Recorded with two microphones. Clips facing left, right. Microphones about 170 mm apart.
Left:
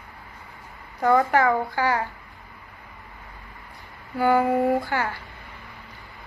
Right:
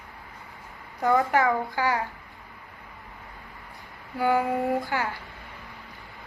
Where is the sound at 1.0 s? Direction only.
10° right (ahead or behind).